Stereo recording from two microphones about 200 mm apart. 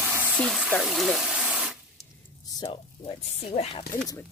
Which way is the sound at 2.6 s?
25° left (ahead or behind).